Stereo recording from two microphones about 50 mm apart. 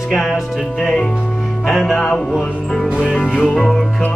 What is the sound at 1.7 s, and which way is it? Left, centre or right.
Music, centre.